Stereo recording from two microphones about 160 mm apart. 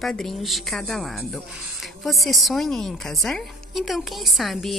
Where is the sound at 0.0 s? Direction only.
Centre (ahead or behind).